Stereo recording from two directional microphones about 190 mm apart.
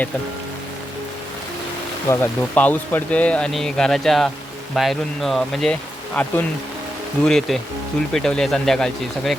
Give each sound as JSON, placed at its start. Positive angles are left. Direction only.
{"t": 2.0, "sound": "speech", "side_deg": 10}